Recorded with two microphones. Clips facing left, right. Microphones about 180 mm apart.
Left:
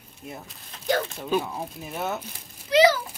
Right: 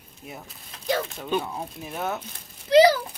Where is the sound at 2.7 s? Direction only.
35° right (ahead or behind).